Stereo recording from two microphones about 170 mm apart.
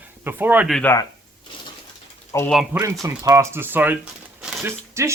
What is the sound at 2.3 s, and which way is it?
Speech, 20° left (ahead or behind).